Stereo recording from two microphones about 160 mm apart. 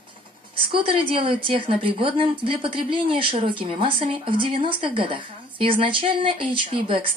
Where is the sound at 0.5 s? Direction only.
35° right (ahead or behind).